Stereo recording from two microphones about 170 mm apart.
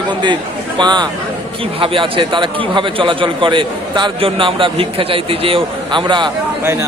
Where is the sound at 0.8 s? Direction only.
25° right (ahead or behind).